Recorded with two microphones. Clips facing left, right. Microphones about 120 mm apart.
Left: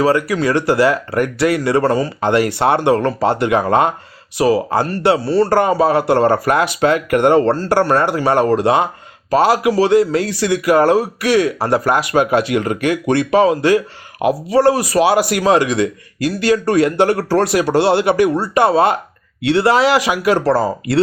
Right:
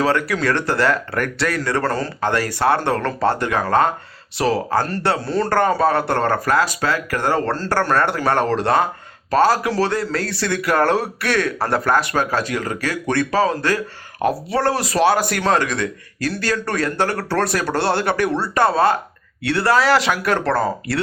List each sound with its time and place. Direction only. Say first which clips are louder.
0.0 s speech: left 4 dB; 5° left (ahead or behind)
4.4 s speech: left 4 dB; 5° left (ahead or behind)